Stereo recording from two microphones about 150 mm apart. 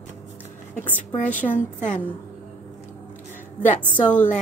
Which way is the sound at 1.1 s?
60° left (ahead or behind).